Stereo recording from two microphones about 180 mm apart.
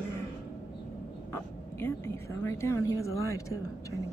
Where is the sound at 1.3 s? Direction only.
15° left (ahead or behind).